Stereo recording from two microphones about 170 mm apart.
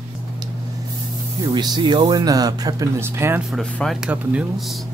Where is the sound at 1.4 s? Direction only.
25° right (ahead or behind).